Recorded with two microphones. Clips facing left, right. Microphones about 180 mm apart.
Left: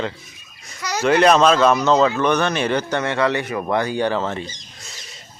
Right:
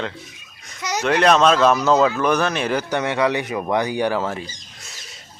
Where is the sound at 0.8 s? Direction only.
20° right (ahead or behind).